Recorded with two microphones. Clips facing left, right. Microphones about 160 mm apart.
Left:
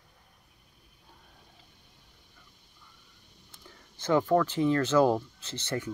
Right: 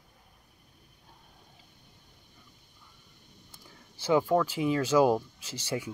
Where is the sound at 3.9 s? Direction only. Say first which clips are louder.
Even; 10° right (ahead or behind).